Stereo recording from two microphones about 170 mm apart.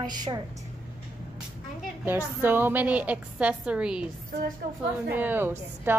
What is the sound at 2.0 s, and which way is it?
Speech, 10° right (ahead or behind).